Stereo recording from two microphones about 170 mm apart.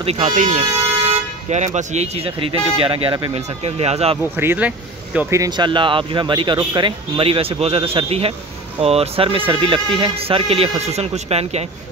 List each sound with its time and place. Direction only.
0.0 s speech: 40° right (ahead or behind)
4.2 s speech: 15° right (ahead or behind); by 11.6 s 40° right (ahead or behind)